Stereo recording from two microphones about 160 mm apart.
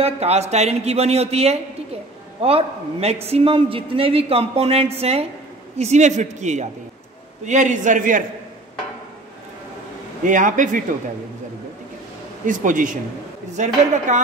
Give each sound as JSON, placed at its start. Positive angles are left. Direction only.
{"t": 0.0, "sound": "a woman's voice", "side_deg": -40}
{"t": 10.2, "sound": "speech", "side_deg": -55}
{"t": 12.4, "sound": "speech", "side_deg": -55}